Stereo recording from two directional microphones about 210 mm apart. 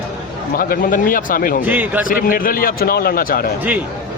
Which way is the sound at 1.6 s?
10° right (ahead or behind).